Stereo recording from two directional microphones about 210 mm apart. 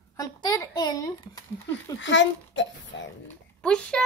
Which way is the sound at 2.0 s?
60° left (ahead or behind).